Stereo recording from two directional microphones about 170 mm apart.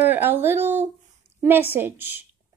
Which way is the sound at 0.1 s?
10° right (ahead or behind).